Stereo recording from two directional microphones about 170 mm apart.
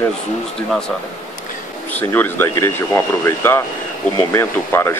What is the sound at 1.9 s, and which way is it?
Speech, 10° left (ahead or behind).